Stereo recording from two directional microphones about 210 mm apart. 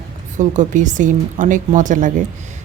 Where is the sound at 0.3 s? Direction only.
35° right (ahead or behind).